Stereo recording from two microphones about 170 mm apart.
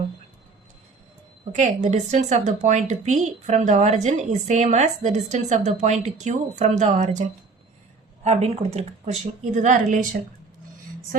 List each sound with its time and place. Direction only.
1.5 s speech: 45° right (ahead or behind)